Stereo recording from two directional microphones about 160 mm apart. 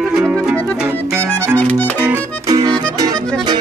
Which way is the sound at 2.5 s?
25° right (ahead or behind).